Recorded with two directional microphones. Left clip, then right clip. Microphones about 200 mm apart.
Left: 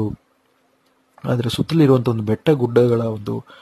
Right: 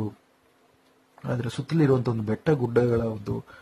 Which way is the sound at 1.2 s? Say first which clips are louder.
Left 9 dB; 45° left (ahead or behind).